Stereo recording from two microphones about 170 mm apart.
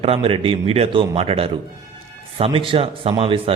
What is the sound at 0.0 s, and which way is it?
Speech, 35° right (ahead or behind).